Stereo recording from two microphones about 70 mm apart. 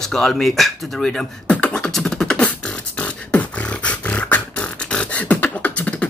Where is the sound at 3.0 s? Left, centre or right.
Centre.